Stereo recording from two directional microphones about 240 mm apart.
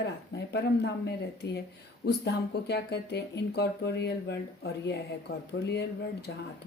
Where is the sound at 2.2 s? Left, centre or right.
Left.